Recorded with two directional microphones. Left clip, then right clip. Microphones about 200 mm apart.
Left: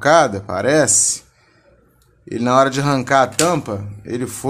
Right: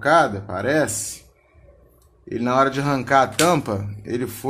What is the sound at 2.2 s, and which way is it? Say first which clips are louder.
Speech: left 4 dB; 20° left (ahead or behind).